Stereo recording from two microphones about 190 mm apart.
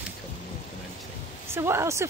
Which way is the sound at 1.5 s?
15° right (ahead or behind).